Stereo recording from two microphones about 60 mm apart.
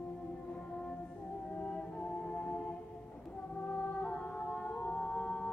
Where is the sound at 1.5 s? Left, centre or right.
Left.